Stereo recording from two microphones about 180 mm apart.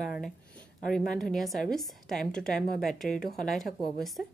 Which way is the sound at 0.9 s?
Centre (ahead or behind).